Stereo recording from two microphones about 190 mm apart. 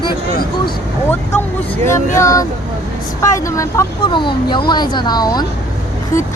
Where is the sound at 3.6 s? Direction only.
20° left (ahead or behind).